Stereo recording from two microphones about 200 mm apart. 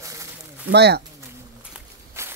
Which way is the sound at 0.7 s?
55° right (ahead or behind).